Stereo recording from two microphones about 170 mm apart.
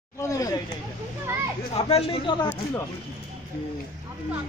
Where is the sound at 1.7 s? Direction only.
35° left (ahead or behind).